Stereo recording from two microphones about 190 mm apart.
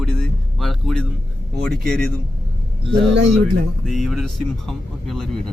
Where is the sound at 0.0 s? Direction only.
Centre (ahead or behind).